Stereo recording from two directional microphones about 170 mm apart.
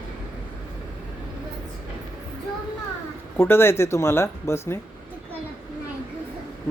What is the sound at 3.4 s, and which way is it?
Speech, 15° left (ahead or behind).